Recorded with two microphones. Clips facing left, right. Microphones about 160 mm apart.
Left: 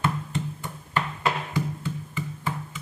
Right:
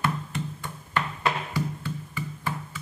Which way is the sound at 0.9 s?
15° left (ahead or behind).